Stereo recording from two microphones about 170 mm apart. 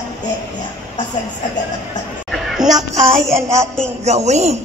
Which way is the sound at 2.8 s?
15° right (ahead or behind).